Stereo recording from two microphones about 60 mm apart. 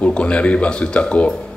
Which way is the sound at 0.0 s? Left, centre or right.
Centre.